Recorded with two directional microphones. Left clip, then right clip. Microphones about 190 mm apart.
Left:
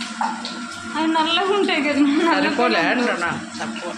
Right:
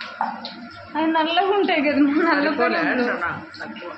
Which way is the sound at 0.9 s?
20° right (ahead or behind).